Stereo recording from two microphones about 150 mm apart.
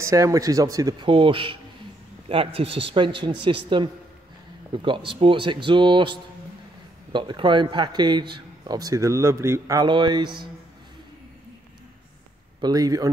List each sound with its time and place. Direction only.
0.0 s a man's voice: 20° right (ahead or behind)
12.5 s speech: 25° right (ahead or behind)